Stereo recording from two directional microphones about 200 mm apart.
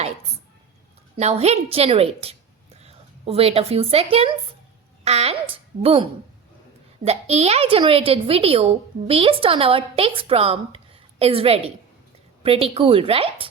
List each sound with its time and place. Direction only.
1.1 s a woman's voice: 30° right (ahead or behind)